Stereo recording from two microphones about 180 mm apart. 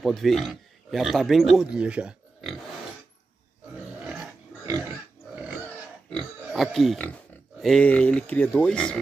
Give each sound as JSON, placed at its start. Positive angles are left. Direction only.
{"t": 0.0, "sound": "speech", "side_deg": 0}
{"t": 3.7, "sound": "a sound", "side_deg": -5}
{"t": 4.6, "sound": "pig", "side_deg": -15}
{"t": 6.0, "sound": "pig", "side_deg": 5}
{"t": 7.6, "sound": "speech", "side_deg": 5}